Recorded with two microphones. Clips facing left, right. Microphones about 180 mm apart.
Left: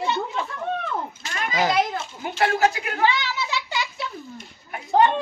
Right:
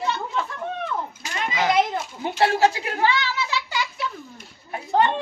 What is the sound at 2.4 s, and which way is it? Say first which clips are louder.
Speech: right 1 dB; 30° right (ahead or behind).